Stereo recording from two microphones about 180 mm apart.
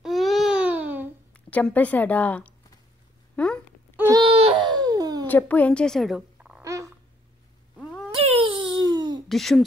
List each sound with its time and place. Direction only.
0.0 s baby cry: centre (ahead or behind)
1.3 s a woman's voice: 10° left (ahead or behind)
4.1 s baby cry: 30° right (ahead or behind)
5.2 s a woman's voice: 10° left (ahead or behind)
6.6 s a sound: 15° right (ahead or behind)
7.7 s cat: 5° left (ahead or behind)
8.1 s a sound: 30° right (ahead or behind)
9.3 s speech: centre (ahead or behind)